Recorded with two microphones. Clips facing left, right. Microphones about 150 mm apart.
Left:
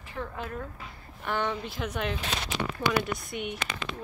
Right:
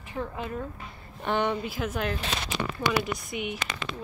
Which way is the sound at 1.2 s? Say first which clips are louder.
Right 4 dB; 15° right (ahead or behind).